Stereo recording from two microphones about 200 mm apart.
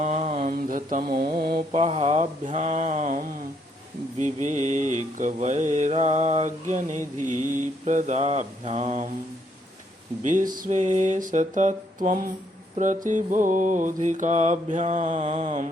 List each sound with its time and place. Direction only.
0.0 s mantra: 35° right (ahead or behind)
1.7 s mantra: 35° right (ahead or behind)
10.2 s mantra: 40° right (ahead or behind)